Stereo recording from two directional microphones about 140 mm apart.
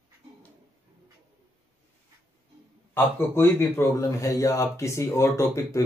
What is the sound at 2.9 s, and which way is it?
A man's voice, 15° left (ahead or behind).